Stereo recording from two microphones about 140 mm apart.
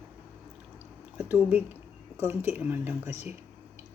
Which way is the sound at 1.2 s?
10° right (ahead or behind).